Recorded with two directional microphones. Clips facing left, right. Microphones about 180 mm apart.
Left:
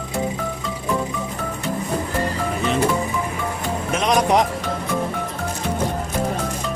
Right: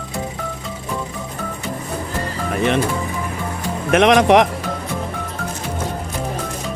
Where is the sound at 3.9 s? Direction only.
70° right (ahead or behind).